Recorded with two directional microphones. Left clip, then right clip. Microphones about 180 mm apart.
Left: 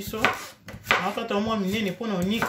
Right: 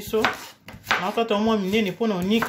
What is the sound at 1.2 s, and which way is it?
Speech, 45° right (ahead or behind).